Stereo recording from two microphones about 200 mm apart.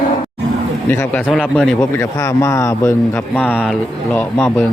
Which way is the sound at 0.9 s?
10° left (ahead or behind).